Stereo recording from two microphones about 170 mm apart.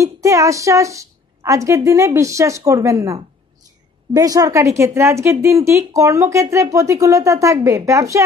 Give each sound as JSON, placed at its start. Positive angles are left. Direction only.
{"t": 0.0, "sound": "a woman's voice", "side_deg": -20}